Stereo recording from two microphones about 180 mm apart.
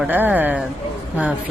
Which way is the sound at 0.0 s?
10° right (ahead or behind).